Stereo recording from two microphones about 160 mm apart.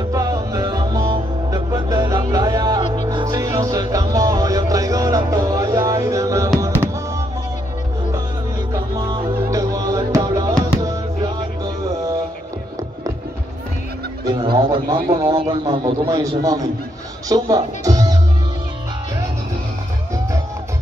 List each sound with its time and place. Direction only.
0.1 s music: 20° right (ahead or behind)
8.9 s music: 30° right (ahead or behind)
14.4 s a man's voice: 30° right (ahead or behind)
17.3 s music: 25° right (ahead or behind)